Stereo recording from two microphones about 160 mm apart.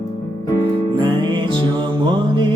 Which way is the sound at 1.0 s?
30° right (ahead or behind).